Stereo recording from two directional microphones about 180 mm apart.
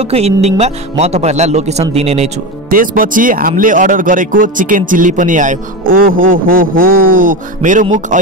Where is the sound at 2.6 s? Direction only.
50° right (ahead or behind).